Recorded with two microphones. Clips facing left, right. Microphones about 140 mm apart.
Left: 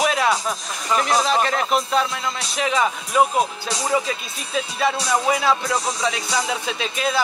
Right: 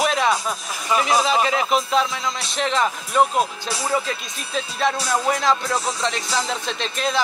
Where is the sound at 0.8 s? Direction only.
5° right (ahead or behind).